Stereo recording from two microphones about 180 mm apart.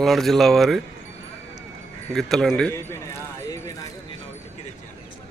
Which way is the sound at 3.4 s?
20° left (ahead or behind).